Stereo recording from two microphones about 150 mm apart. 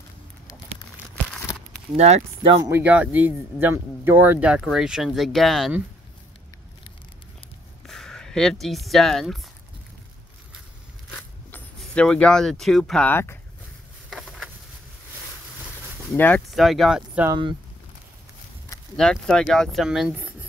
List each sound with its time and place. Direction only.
2.0 s speech: 45° right (ahead or behind)
2.7 s speech: 10° right (ahead or behind)
7.8 s speech: centre (ahead or behind)
11.1 s speech: 10° left (ahead or behind)
14.1 s a sound: centre (ahead or behind)
16.1 s speech: 10° left (ahead or behind)
16.4 s speech: centre (ahead or behind)
17.3 s speech: 30° right (ahead or behind)
18.9 s speech: 5° left (ahead or behind)
20.2 s a sound: 10° right (ahead or behind)